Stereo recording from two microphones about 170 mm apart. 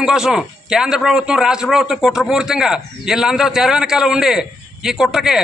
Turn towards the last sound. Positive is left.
turn(degrees=0)  # may be behind; listen again after turning